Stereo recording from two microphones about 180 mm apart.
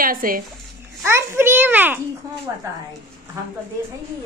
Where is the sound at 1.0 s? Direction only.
15° right (ahead or behind).